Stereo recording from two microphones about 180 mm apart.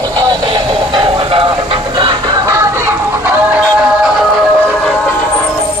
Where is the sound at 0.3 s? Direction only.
25° right (ahead or behind); by 3.6 s 10° right (ahead or behind).